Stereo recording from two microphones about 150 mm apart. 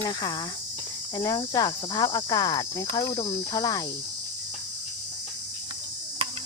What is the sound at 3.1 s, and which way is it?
Speech, 30° left (ahead or behind).